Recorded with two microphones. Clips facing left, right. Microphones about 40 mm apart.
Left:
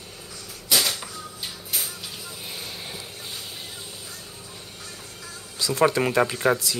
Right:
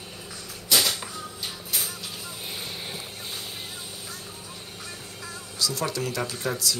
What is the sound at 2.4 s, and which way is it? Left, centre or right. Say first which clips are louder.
Vehicle: right 1 dB; centre.